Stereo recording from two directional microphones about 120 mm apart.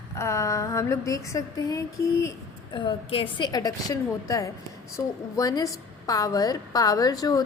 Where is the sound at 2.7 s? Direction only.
50° left (ahead or behind).